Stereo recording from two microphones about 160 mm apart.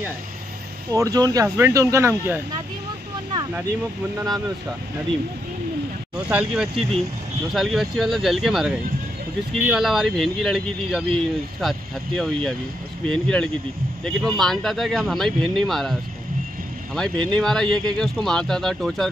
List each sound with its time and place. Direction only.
0.9 s speech: 20° right (ahead or behind)
6.1 s speech: 5° right (ahead or behind)